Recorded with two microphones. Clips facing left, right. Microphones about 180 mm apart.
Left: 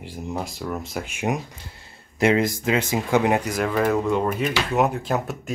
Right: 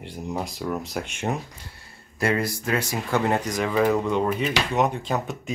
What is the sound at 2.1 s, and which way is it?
Speech, 20° left (ahead or behind).